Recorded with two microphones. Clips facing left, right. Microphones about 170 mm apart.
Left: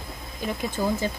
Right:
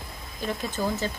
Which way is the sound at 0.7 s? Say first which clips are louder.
Left 3 dB; 10° left (ahead or behind).